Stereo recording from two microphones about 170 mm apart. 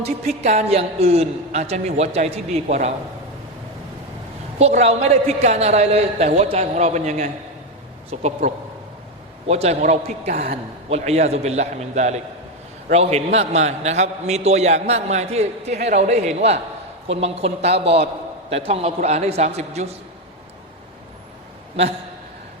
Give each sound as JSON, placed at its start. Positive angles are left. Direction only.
{"t": 0.0, "sound": "a man's voice", "side_deg": -40}
{"t": 4.6, "sound": "a man's voice", "side_deg": -40}
{"t": 10.8, "sound": "a man's voice", "side_deg": -40}